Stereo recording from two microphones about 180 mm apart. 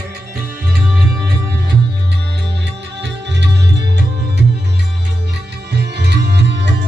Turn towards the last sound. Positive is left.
turn(degrees=-80)